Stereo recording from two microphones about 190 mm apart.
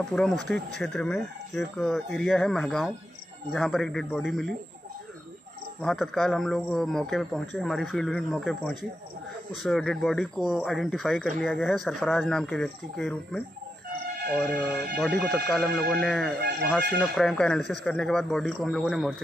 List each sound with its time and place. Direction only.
0.1 s speech: centre (ahead or behind)
5.8 s speech: centre (ahead or behind)
15.0 s speech: centre (ahead or behind)
16.3 s speech: 55° right (ahead or behind)
17.0 s speech: centre (ahead or behind)